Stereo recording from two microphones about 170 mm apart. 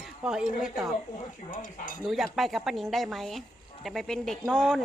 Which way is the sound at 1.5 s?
55° left (ahead or behind).